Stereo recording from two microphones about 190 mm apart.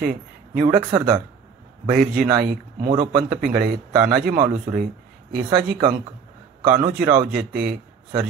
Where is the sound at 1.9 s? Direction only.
50° right (ahead or behind).